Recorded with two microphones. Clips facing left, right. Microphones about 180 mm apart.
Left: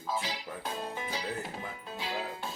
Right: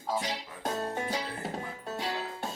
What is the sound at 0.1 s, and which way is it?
Music, 45° right (ahead or behind).